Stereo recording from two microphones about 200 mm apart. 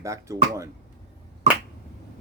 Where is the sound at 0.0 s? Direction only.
15° right (ahead or behind).